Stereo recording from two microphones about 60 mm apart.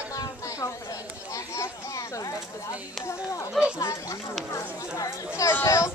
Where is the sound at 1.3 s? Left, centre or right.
Left.